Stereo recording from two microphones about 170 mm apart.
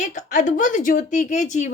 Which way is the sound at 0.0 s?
45° left (ahead or behind).